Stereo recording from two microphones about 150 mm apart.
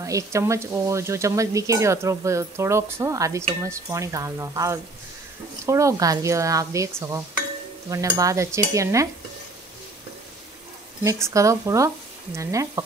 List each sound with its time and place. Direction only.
0.0 s speech: 20° right (ahead or behind)
11.1 s speech: 20° right (ahead or behind)